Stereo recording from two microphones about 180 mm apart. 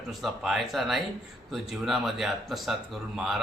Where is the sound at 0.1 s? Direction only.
Centre (ahead or behind).